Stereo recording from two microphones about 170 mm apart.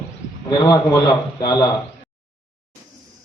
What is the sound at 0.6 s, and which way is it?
A man's voice, 25° left (ahead or behind).